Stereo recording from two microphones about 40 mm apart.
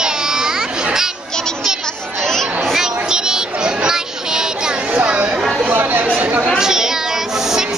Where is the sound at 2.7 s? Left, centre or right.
Centre.